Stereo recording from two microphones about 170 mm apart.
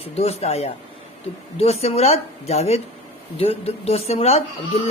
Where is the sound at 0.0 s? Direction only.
35° left (ahead or behind).